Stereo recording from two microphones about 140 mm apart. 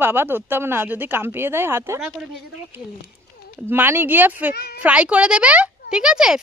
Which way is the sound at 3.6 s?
15° right (ahead or behind).